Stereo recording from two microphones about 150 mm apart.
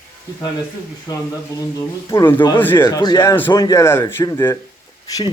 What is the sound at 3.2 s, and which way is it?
Speech, 15° left (ahead or behind).